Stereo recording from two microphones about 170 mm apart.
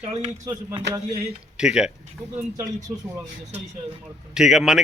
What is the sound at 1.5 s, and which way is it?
Speech, 5° right (ahead or behind).